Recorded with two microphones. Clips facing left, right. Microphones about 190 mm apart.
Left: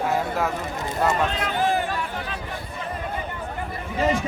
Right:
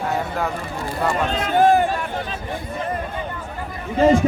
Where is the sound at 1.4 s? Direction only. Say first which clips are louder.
Right 8 dB; 50° right (ahead or behind).